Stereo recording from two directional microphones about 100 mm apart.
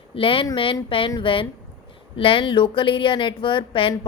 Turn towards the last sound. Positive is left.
turn(degrees=60)  # may be behind; listen again after turning